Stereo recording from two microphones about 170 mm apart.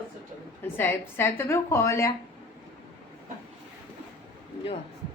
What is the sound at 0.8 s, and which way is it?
A woman's voice, 10° left (ahead or behind).